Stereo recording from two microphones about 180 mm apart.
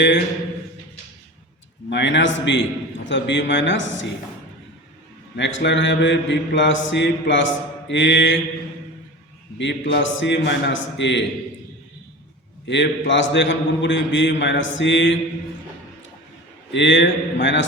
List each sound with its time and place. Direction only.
1.9 s a man's voice: 75° left (ahead or behind)
5.4 s a man's voice: 85° left
9.6 s a man's voice: 75° left (ahead or behind)
12.6 s a man's voice: 75° left (ahead or behind)
16.7 s a man's voice: 80° left